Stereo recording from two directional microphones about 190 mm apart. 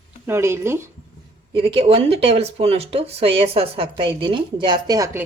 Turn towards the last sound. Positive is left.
turn(degrees=-20)  # may be behind; listen again after turning